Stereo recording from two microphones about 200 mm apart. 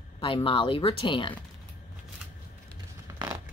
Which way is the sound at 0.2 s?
25° left (ahead or behind).